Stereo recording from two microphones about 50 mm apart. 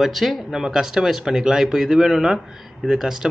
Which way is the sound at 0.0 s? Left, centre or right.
Centre.